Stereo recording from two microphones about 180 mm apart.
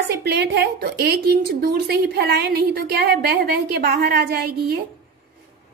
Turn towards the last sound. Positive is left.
turn(degrees=-60)  # may be behind; listen again after turning